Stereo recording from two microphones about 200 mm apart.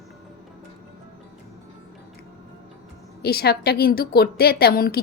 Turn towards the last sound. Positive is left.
turn(degrees=50)  # may be behind; listen again after turning